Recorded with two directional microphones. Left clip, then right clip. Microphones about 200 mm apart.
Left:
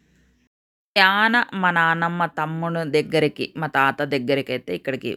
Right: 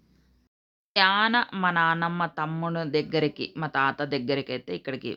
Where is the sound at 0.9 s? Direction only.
20° left (ahead or behind).